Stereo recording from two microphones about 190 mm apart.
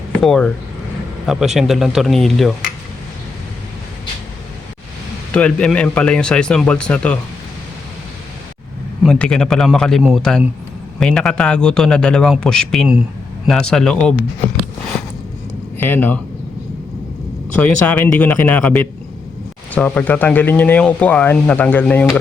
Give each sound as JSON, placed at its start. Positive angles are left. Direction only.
{"t": 0.1, "sound": "speech", "side_deg": 5}
{"t": 1.5, "sound": "a man's voice", "side_deg": 0}
{"t": 5.3, "sound": "a man's voice", "side_deg": 5}
{"t": 9.0, "sound": "a man's voice", "side_deg": 5}
{"t": 15.8, "sound": "speech", "side_deg": 10}
{"t": 17.6, "sound": "speech", "side_deg": 5}